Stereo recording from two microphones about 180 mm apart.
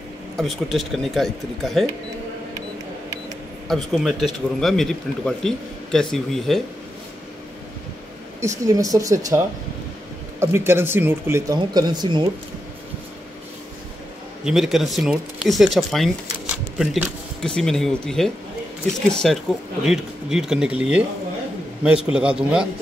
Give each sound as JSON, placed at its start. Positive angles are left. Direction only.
{"t": 0.4, "sound": "speech", "side_deg": 0}
{"t": 3.6, "sound": "speech", "side_deg": 0}
{"t": 8.4, "sound": "speech", "side_deg": -15}
{"t": 10.4, "sound": "speech", "side_deg": -15}
{"t": 14.4, "sound": "speech", "side_deg": 0}